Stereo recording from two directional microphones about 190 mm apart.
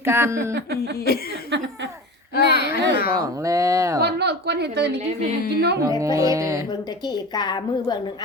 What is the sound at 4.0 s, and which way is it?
Speech, 60° right (ahead or behind).